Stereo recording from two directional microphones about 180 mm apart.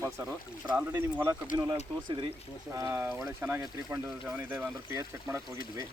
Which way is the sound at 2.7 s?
15° right (ahead or behind).